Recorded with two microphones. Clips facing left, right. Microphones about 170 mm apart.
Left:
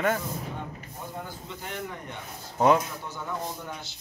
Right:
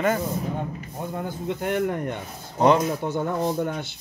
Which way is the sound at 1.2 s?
60° right (ahead or behind).